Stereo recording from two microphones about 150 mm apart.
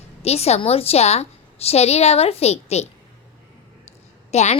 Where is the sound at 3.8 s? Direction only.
45° left (ahead or behind).